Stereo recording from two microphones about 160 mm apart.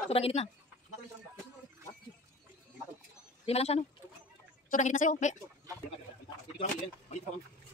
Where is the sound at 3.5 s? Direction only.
40° left (ahead or behind).